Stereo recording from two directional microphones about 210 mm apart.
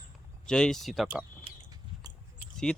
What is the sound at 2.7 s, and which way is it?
Speech, 5° left (ahead or behind).